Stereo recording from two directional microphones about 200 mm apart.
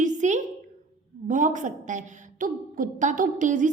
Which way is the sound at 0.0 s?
35° right (ahead or behind).